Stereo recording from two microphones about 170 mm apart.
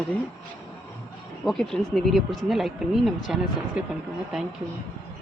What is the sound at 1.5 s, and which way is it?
Speech, centre (ahead or behind).